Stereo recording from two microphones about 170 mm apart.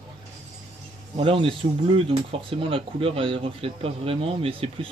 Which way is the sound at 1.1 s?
30° right (ahead or behind).